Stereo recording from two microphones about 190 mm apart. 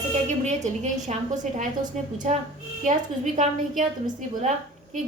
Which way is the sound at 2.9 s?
40° right (ahead or behind).